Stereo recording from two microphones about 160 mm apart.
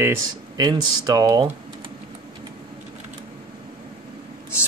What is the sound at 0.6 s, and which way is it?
Speech, 25° right (ahead or behind).